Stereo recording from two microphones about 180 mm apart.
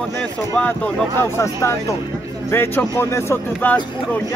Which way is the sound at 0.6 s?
10° left (ahead or behind).